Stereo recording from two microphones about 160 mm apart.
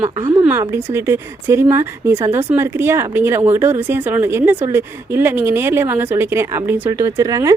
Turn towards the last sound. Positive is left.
turn(degrees=-20)  # may be behind; listen again after turning